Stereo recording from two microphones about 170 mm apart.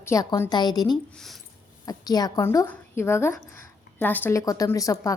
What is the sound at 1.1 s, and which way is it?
Speech, centre (ahead or behind).